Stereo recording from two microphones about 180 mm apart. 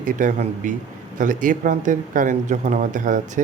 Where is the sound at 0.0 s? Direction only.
45° right (ahead or behind).